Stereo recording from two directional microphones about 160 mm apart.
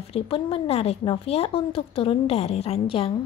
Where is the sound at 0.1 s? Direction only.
35° left (ahead or behind).